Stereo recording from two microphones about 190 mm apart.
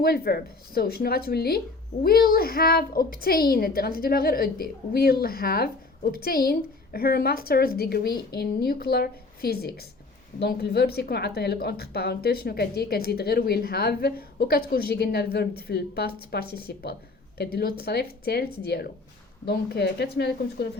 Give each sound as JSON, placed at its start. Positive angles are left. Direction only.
{"t": 0.0, "sound": "a woman's voice", "side_deg": 55}